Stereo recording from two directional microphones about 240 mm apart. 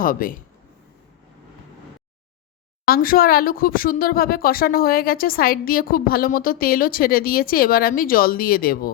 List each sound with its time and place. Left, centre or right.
0.0 s speech: left
2.8 s speech: left